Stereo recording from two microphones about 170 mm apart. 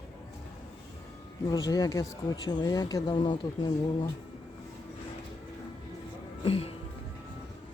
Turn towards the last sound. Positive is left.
turn(degrees=35)  # may be behind; listen again after turning